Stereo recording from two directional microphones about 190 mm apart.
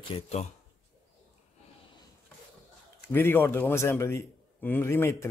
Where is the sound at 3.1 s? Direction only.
10° left (ahead or behind).